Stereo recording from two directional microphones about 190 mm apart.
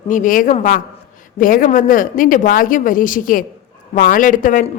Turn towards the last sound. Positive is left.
turn(degrees=45)  # may be behind; listen again after turning